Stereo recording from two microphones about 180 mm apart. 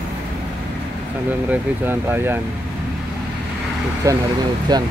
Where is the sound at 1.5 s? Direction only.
10° right (ahead or behind).